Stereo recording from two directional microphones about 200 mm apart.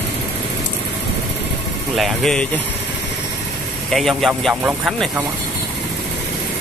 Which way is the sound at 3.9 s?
Centre (ahead or behind).